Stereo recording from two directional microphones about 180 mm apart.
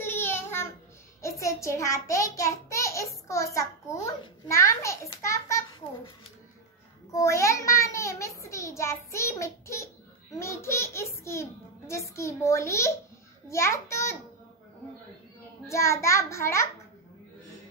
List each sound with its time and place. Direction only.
0.0 s child singing: 10° left (ahead or behind)
1.2 s a child's voice: 15° left (ahead or behind)
7.1 s a child's voice: 15° left (ahead or behind)
15.7 s a child's voice: 15° left (ahead or behind)